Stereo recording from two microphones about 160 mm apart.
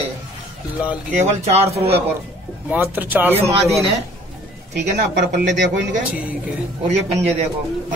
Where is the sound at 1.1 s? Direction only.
40° right (ahead or behind).